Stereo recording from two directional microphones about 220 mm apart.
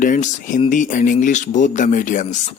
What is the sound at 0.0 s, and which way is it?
Speech, 35° left (ahead or behind).